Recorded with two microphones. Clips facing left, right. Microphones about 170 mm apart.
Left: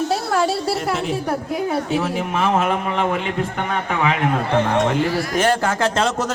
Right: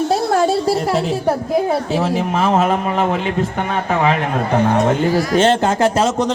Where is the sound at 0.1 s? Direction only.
40° right (ahead or behind).